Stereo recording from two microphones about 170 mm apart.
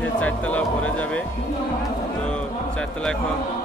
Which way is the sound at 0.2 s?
10° left (ahead or behind).